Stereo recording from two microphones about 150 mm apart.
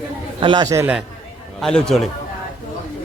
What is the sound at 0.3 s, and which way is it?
Speech, 30° right (ahead or behind).